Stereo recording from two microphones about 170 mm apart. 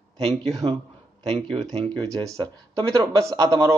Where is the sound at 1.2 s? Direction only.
35° right (ahead or behind).